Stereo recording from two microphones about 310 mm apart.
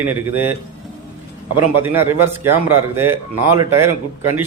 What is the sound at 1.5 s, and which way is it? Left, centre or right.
Speech, right.